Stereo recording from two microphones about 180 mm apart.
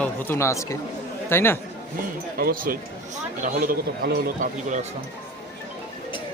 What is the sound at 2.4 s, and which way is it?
Speech, 55° right (ahead or behind).